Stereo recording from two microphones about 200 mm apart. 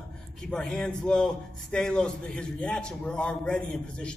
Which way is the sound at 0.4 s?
5° left (ahead or behind).